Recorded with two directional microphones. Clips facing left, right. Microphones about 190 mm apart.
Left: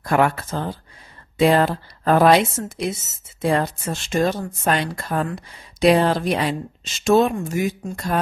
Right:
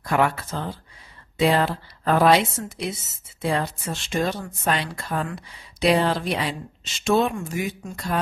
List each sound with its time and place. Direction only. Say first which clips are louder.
0.0 s a woman's voice: left 3 dB; 45° left (ahead or behind)